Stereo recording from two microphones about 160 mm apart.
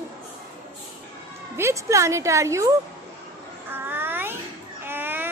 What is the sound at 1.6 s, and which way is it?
A woman's voice, 15° right (ahead or behind).